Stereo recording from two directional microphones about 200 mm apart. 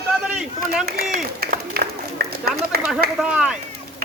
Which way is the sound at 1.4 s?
50° right (ahead or behind).